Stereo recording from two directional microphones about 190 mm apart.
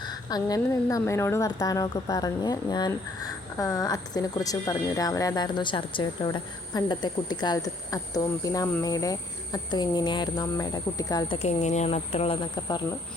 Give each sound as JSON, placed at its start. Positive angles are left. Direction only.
{"t": 0.0, "sound": "a woman's voice", "side_deg": 20}
{"t": 11.4, "sound": "speech", "side_deg": 35}